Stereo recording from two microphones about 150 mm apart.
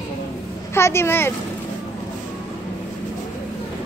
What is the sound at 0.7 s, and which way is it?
Speech, 15° left (ahead or behind).